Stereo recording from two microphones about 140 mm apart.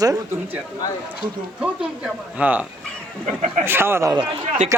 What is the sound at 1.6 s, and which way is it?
A man's voice, 10° right (ahead or behind).